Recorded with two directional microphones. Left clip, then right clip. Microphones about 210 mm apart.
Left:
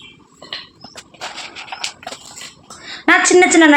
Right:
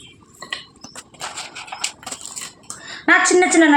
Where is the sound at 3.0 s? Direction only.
50° left (ahead or behind).